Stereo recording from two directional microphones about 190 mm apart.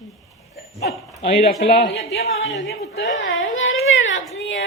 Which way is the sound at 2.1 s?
65° left (ahead or behind).